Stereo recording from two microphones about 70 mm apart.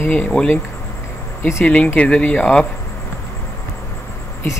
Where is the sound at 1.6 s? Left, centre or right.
Centre.